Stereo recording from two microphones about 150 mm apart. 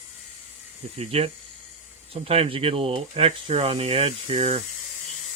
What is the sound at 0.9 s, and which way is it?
Speech, 45° right (ahead or behind).